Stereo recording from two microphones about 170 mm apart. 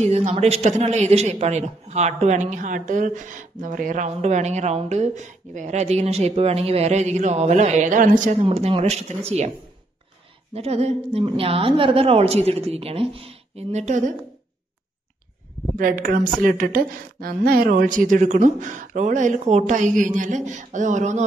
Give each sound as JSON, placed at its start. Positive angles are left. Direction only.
{"t": 0.0, "sound": "a man's voice", "side_deg": -40}
{"t": 8.5, "sound": "a man's voice", "side_deg": -35}
{"t": 10.5, "sound": "a man's voice", "side_deg": -40}
{"t": 15.7, "sound": "a woman's voice", "side_deg": -55}